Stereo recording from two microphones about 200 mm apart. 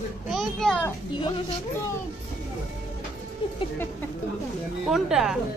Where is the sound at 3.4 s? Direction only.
25° left (ahead or behind).